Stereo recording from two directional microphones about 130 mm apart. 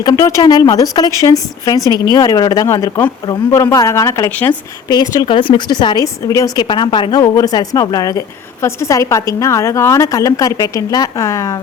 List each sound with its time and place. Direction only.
0.0 s a woman's voice: 25° left (ahead or behind)
4.3 s a woman's voice: 10° left (ahead or behind)
4.9 s a woman's voice: 30° left (ahead or behind)